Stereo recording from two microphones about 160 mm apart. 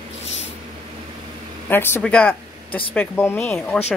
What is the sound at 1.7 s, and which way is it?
Speech, 15° left (ahead or behind).